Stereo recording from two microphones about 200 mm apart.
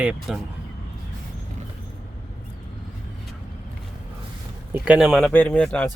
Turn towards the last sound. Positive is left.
turn(degrees=5)  # may be behind; listen again after turning